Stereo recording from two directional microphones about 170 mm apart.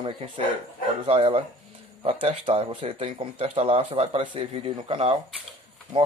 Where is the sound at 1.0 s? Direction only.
35° right (ahead or behind).